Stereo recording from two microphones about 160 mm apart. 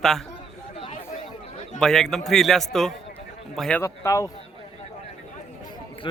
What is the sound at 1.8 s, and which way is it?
A man's voice, centre (ahead or behind).